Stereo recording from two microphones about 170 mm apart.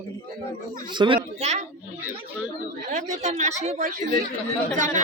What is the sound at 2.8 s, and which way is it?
Speech, 45° right (ahead or behind).